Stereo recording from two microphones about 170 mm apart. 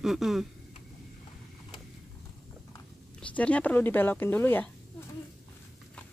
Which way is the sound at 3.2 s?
5° left (ahead or behind).